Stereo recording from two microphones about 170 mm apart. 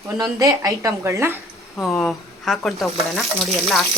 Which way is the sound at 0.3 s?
20° right (ahead or behind).